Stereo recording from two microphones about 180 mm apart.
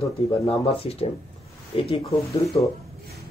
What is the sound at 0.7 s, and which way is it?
Speech, 30° left (ahead or behind).